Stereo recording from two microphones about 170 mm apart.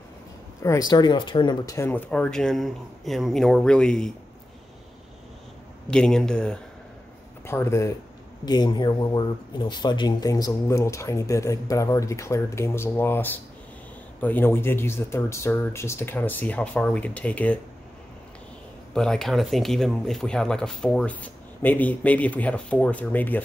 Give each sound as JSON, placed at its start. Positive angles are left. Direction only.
{"t": 0.6, "sound": "speech", "side_deg": 20}
{"t": 1.8, "sound": "speech", "side_deg": 10}
{"t": 5.9, "sound": "speech", "side_deg": 5}
{"t": 18.9, "sound": "speech", "side_deg": 5}